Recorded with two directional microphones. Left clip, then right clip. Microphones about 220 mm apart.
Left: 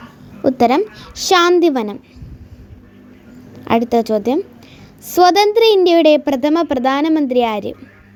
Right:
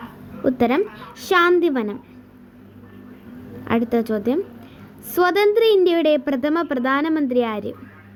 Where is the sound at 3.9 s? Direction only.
20° left (ahead or behind).